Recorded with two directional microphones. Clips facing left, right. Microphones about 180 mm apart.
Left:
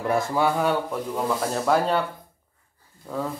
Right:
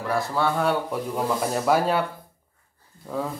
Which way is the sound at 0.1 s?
15° left (ahead or behind).